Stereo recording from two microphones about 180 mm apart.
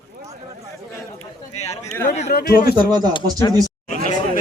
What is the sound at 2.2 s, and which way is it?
Speech, 60° left (ahead or behind).